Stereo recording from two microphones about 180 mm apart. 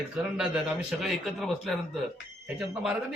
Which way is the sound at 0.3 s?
5° right (ahead or behind).